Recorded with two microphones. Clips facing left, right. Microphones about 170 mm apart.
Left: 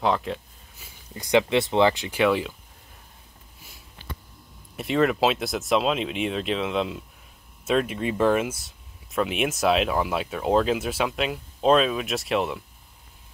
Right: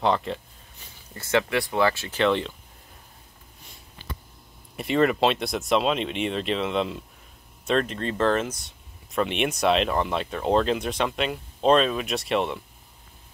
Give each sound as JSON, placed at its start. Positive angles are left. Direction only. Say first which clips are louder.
{"t": 0.0, "sound": "a sound", "louder": "even", "side_deg": 0}
{"t": 1.1, "sound": "speech", "louder": "left 3 dB", "side_deg": 15}
{"t": 4.7, "sound": "speech", "louder": "even", "side_deg": 0}